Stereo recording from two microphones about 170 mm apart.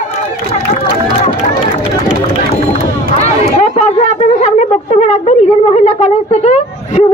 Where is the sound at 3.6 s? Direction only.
40° left (ahead or behind).